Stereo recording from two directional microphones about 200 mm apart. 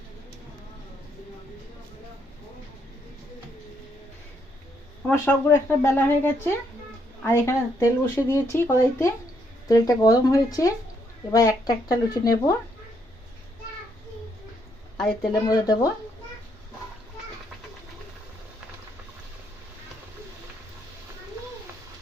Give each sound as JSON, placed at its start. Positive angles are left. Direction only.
{"t": 5.0, "sound": "speech", "side_deg": 10}
{"t": 14.9, "sound": "speech", "side_deg": 0}
{"t": 15.3, "sound": "speech", "side_deg": 20}